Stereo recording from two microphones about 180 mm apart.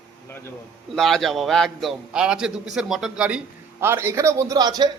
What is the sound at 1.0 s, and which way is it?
A man's voice, centre (ahead or behind).